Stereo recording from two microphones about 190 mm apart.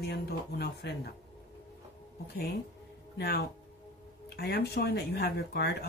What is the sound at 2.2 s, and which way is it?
Speech, 60° left (ahead or behind).